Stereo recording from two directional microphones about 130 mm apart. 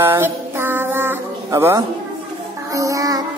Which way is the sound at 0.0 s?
20° right (ahead or behind).